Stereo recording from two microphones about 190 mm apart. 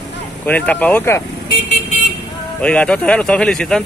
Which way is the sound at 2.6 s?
5° left (ahead or behind).